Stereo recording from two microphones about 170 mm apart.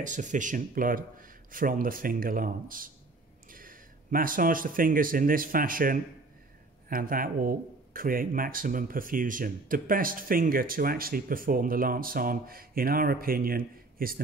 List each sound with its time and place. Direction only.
0.0 s speech: 45° right (ahead or behind)